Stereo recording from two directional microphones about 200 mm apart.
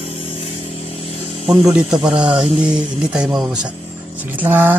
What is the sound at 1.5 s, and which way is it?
Speech, centre (ahead or behind).